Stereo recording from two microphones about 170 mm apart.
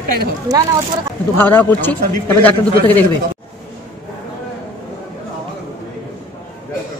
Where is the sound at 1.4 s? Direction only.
10° left (ahead or behind).